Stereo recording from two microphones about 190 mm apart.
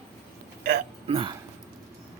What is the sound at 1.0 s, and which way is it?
Speech, 25° right (ahead or behind).